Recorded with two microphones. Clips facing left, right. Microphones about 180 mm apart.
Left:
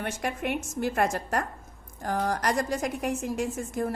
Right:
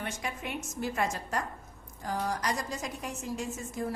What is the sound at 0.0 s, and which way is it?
A woman's voice, 60° left (ahead or behind).